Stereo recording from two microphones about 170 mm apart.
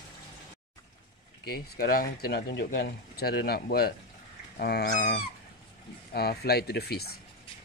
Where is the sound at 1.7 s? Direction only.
60° left (ahead or behind).